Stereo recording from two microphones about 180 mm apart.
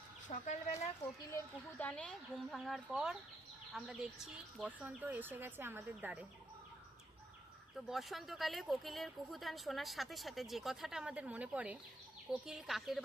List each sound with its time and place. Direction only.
0.3 s speech: 40° left (ahead or behind)
1.8 s speech: 5° left (ahead or behind); by 6.2 s 10° right (ahead or behind)
7.9 s speech: centre (ahead or behind)